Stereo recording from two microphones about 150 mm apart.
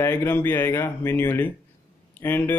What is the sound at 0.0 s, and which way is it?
Speech, 15° left (ahead or behind).